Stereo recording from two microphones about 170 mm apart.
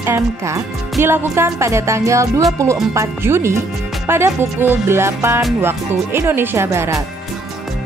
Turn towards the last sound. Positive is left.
turn(degrees=-20)  # may be behind; listen again after turning